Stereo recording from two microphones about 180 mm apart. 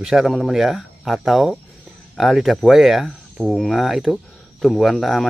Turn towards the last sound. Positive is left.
turn(degrees=0)  # may be behind; listen again after turning